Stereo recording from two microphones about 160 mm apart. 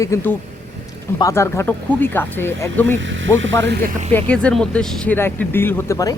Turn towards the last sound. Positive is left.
turn(degrees=20)  # may be behind; listen again after turning